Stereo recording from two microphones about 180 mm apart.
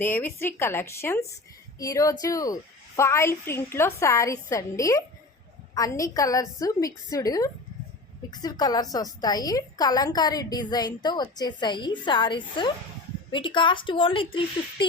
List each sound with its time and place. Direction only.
0.0 s a woman's voice: 10° left (ahead or behind); by 14.8 s 30° left (ahead or behind)